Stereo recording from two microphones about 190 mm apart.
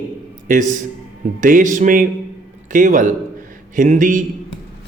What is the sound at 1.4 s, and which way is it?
A man's voice, 45° right (ahead or behind).